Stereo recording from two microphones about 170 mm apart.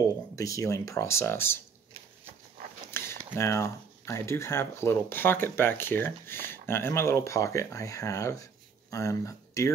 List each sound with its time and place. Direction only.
0.4 s speech: 20° left (ahead or behind)
2.9 s a sound: 15° left (ahead or behind)
3.3 s speech: 15° left (ahead or behind)